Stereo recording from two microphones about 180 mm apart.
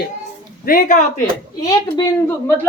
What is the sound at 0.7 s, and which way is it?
Speech, 50° left (ahead or behind).